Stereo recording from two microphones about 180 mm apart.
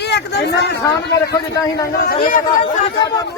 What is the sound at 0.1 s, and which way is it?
Speech, 70° left (ahead or behind).